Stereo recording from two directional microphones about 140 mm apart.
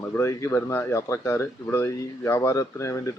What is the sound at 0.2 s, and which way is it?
Speech, 20° left (ahead or behind).